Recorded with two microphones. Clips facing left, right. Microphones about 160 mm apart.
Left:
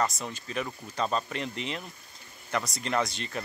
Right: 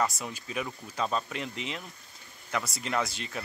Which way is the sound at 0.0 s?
5° right (ahead or behind).